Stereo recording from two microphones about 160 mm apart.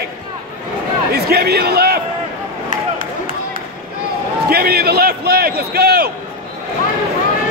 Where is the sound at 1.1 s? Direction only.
80° right.